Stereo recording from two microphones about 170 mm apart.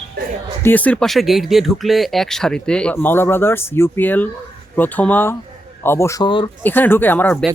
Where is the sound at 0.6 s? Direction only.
10° left (ahead or behind); by 6.5 s 30° left (ahead or behind).